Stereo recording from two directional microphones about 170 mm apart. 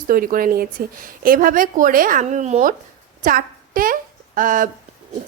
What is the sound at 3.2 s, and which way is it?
A woman's voice, 55° right (ahead or behind).